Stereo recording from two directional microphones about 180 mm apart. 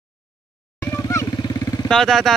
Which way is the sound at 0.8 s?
20° left (ahead or behind).